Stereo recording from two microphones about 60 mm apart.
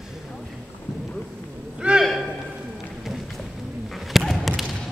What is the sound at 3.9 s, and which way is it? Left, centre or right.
Thump, centre.